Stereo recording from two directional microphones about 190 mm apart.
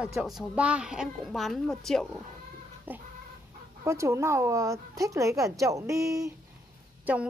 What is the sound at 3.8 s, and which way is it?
A woman's voice, 15° right (ahead or behind).